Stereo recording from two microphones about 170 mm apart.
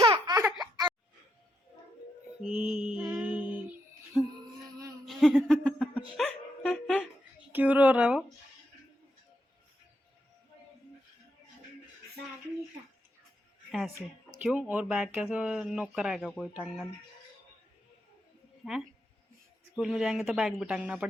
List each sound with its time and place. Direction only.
0.0 s laughter: 30° right (ahead or behind)
2.4 s mantra: 5° right (ahead or behind)
5.0 s a sound: centre (ahead or behind)
5.5 s speech: 5° left (ahead or behind)
6.1 s music: 5° left (ahead or behind)
7.5 s speech: 10° right (ahead or behind)
13.7 s speech: centre (ahead or behind)
19.7 s speech: centre (ahead or behind)